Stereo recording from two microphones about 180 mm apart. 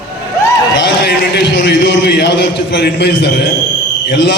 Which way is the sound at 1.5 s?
75° left (ahead or behind).